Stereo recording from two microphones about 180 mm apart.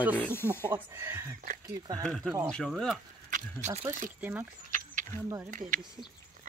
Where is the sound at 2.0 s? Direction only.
5° left (ahead or behind).